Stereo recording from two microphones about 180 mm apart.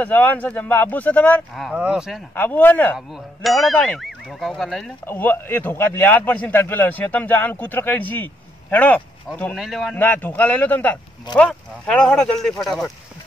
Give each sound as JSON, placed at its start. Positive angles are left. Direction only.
{"t": 0.0, "sound": "a man's voice", "side_deg": 10}
{"t": 1.6, "sound": "speech", "side_deg": -5}
{"t": 2.3, "sound": "a man's voice", "side_deg": 10}
{"t": 5.0, "sound": "a man's voice", "side_deg": 10}
{"t": 9.9, "sound": "a man's voice", "side_deg": 10}